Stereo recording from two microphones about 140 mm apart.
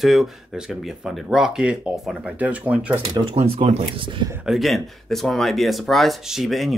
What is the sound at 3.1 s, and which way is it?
Speech, 35° right (ahead or behind).